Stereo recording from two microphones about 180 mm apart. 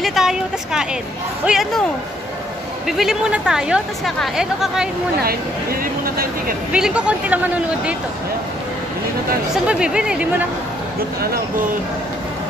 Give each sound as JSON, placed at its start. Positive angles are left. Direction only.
{"t": 0.0, "sound": "speech", "side_deg": 0}
{"t": 2.9, "sound": "speech", "side_deg": 0}
{"t": 5.2, "sound": "speech", "side_deg": -55}
{"t": 6.7, "sound": "speech", "side_deg": -5}
{"t": 9.5, "sound": "speech", "side_deg": -5}